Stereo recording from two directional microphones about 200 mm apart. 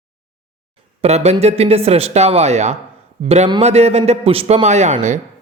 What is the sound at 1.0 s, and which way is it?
A man's voice, 30° right (ahead or behind).